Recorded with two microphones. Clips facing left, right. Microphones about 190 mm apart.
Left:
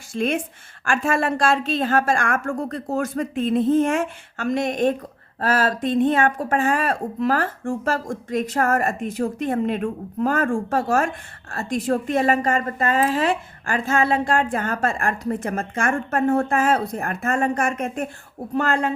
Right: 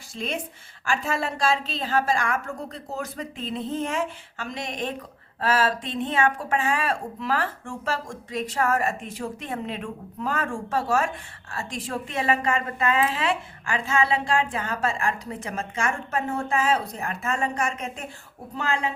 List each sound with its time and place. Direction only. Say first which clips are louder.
0.1 s a woman's voice: left 8 dB; 50° left (ahead or behind)